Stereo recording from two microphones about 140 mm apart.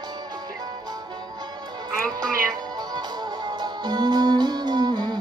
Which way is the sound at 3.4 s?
30° right (ahead or behind).